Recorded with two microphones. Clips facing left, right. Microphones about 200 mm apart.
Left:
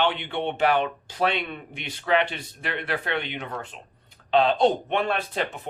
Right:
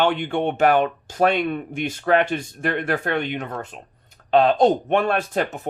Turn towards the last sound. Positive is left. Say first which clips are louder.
# right 5 dB
turn(degrees=-45)  # may be behind; listen again after turning